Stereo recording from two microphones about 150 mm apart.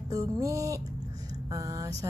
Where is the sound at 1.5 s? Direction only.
25° right (ahead or behind).